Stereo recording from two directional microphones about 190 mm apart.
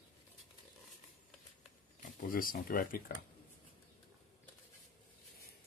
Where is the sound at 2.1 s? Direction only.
50° left (ahead or behind).